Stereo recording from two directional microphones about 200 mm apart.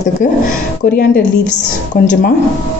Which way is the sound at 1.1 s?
5° left (ahead or behind).